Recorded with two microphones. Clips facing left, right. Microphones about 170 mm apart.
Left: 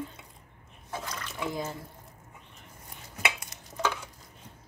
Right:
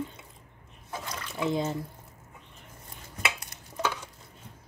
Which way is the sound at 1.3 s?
25° right (ahead or behind).